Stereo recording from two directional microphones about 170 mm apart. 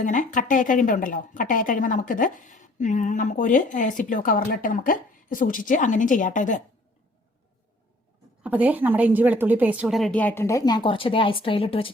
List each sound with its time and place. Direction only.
0.0 s speech: 50° left (ahead or behind)
8.4 s a woman's voice: 10° right (ahead or behind); by 11.9 s 30° left (ahead or behind)